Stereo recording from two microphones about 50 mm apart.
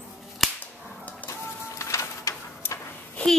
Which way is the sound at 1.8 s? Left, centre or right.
Left.